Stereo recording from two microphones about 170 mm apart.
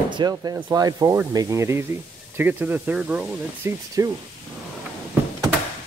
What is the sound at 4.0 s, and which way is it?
Speech, 20° right (ahead or behind).